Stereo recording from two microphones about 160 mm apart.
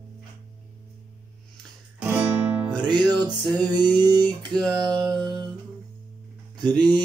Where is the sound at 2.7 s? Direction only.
25° right (ahead or behind).